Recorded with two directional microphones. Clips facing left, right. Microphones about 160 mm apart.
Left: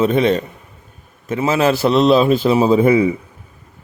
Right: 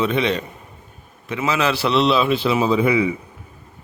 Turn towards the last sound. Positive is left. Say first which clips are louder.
# left 5 dB
turn(degrees=45)  # may be behind; listen again after turning